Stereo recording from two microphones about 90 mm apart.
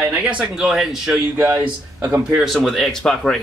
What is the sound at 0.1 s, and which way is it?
Speech, 15° right (ahead or behind).